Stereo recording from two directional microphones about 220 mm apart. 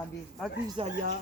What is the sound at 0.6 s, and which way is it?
Speech, 25° right (ahead or behind).